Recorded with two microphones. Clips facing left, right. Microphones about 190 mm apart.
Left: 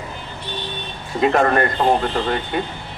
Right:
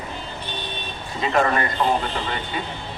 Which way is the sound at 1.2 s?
55° left (ahead or behind).